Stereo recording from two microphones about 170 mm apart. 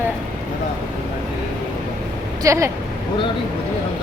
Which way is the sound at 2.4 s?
20° right (ahead or behind).